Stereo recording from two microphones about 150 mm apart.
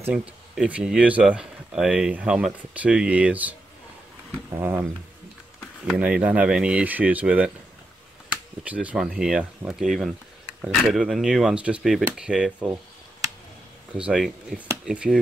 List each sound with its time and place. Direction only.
0.6 s speech: 5° right (ahead or behind)
4.6 s speech: 15° right (ahead or behind)
5.9 s speech: 5° right (ahead or behind)
13.9 s speech: 5° right (ahead or behind)